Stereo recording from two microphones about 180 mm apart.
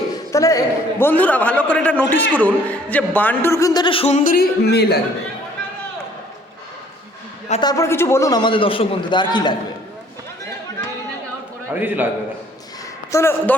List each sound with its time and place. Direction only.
0.1 s a man's voice: 20° left (ahead or behind); by 4.9 s 65° left (ahead or behind)
7.6 s a man's voice: 20° left (ahead or behind)
11.7 s a man's voice: 10° right (ahead or behind)
13.1 s a man's voice: 15° left (ahead or behind)